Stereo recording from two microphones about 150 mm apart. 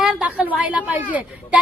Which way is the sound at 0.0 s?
5° right (ahead or behind).